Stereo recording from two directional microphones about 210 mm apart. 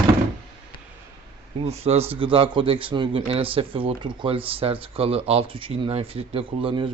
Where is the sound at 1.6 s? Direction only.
30° right (ahead or behind).